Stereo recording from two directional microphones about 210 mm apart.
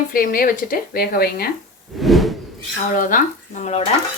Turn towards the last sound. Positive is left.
turn(degrees=35)  # may be behind; listen again after turning